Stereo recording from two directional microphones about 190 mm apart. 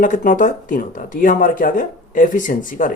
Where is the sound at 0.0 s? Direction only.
45° left (ahead or behind).